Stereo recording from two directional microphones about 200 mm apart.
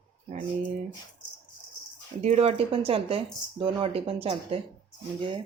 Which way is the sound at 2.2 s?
35° right (ahead or behind).